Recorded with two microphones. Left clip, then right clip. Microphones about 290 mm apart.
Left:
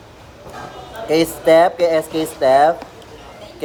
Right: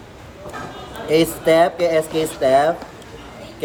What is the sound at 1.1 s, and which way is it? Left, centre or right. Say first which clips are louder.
Speech: left 2 dB; centre.